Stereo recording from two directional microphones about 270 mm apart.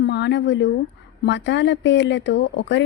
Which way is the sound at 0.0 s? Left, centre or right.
Left.